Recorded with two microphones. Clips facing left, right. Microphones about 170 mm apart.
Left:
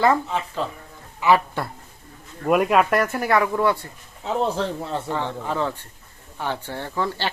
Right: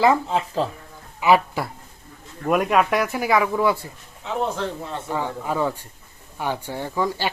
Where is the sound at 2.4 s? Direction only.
Centre (ahead or behind).